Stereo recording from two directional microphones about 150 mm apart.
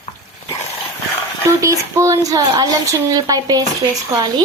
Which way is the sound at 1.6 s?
20° right (ahead or behind).